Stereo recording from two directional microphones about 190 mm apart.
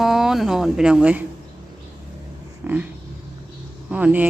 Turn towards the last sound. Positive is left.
turn(degrees=-10)  # may be behind; listen again after turning